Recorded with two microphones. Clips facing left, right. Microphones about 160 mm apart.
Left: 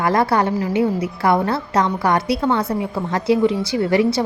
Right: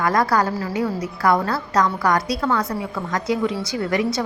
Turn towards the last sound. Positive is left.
turn(degrees=30)  # may be behind; listen again after turning